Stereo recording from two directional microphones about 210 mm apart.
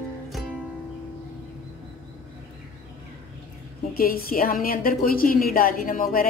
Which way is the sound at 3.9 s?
45° left (ahead or behind).